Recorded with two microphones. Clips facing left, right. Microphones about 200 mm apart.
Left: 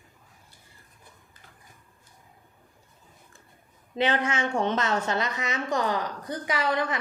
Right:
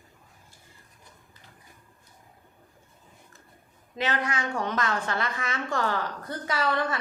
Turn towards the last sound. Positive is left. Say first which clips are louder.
# even
turn(degrees=15)  # may be behind; listen again after turning